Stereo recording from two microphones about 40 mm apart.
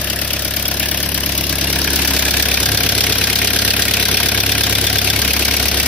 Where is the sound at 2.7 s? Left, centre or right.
Left.